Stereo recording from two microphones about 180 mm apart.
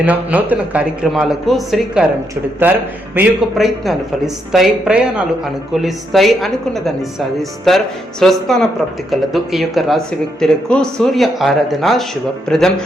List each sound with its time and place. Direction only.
0.0 s speech: 10° right (ahead or behind)